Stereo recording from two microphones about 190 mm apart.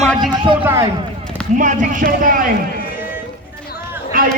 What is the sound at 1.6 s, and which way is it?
Speech, 40° right (ahead or behind).